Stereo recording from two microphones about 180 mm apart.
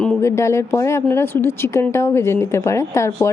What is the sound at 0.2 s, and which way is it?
A woman's voice, 15° left (ahead or behind).